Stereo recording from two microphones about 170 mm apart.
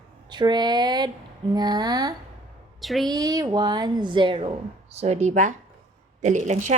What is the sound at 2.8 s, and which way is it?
Speech, centre (ahead or behind).